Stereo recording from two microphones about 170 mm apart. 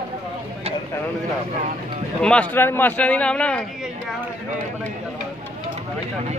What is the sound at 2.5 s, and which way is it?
A man's voice, 10° left (ahead or behind).